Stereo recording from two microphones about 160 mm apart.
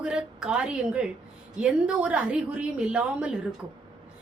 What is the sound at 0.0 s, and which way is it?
A woman's voice, 5° right (ahead or behind).